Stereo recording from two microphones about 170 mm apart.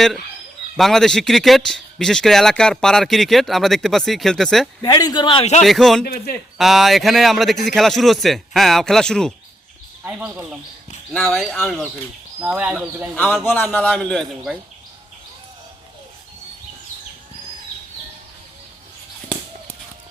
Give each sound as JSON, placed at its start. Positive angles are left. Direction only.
{"t": 0.8, "sound": "speech", "side_deg": 0}
{"t": 4.8, "sound": "a man's voice", "side_deg": 25}
{"t": 5.6, "sound": "speech", "side_deg": 0}
{"t": 6.1, "sound": "speech", "side_deg": 65}
{"t": 6.6, "sound": "speech", "side_deg": 0}
{"t": 10.0, "sound": "speech", "side_deg": -10}
{"t": 11.1, "sound": "speech", "side_deg": 5}
{"t": 13.1, "sound": "a man's voice", "side_deg": 10}